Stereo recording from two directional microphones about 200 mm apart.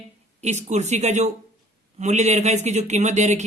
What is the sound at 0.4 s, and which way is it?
Speech, 35° right (ahead or behind).